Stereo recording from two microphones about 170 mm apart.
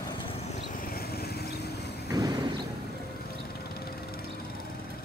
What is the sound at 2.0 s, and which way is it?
Vehicle, 20° right (ahead or behind).